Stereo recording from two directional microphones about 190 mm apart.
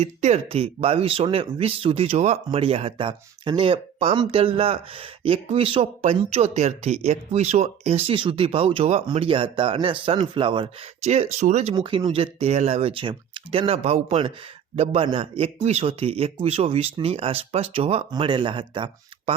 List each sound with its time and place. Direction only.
0.0 s speech: 35° right (ahead or behind)
11.7 s a man's voice: 25° right (ahead or behind)